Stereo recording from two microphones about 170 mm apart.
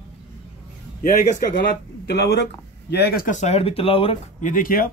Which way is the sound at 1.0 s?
55° left (ahead or behind).